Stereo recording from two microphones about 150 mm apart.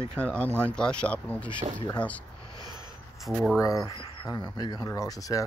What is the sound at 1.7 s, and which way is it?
Speech, 30° left (ahead or behind).